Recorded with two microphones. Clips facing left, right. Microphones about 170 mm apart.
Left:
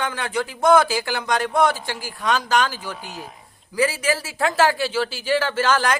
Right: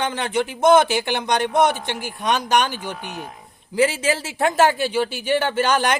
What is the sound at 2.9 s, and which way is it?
Speech, 70° right (ahead or behind).